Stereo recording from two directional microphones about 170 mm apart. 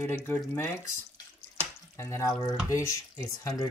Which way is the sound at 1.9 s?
15° left (ahead or behind).